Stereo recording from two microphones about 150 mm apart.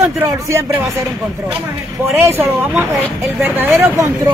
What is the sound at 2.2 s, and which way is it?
Speech, 15° right (ahead or behind).